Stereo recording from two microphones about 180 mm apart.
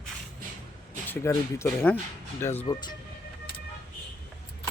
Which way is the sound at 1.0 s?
15° left (ahead or behind).